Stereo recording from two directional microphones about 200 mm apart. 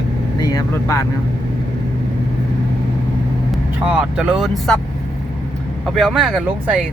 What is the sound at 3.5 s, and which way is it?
Speech, 5° right (ahead or behind).